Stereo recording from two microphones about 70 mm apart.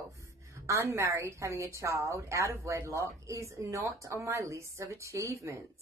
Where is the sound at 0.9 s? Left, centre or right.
Right.